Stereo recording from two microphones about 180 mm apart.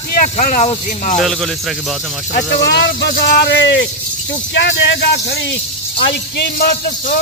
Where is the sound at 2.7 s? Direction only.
65° left (ahead or behind).